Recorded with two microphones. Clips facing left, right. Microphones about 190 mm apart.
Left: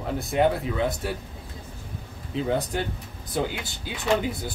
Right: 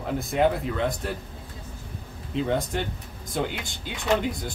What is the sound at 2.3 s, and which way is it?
Speech, centre (ahead or behind).